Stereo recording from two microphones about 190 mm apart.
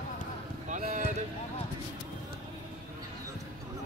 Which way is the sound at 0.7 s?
40° right (ahead or behind).